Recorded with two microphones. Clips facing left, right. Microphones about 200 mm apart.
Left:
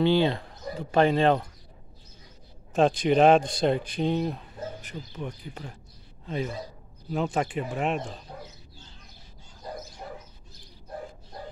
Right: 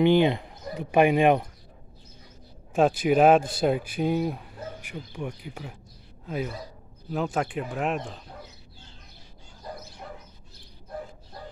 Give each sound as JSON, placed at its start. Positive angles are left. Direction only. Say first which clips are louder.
{"t": 0.0, "sound": "speech", "louder": "right 3 dB", "side_deg": -15}
{"t": 2.7, "sound": "a man's voice", "louder": "right 1 dB", "side_deg": -5}